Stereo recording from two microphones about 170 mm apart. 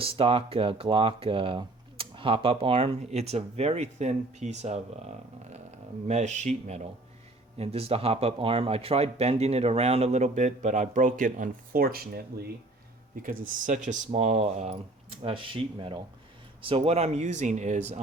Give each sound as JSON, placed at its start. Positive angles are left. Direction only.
{"t": 0.0, "sound": "speech", "side_deg": -35}
{"t": 13.2, "sound": "speech", "side_deg": -50}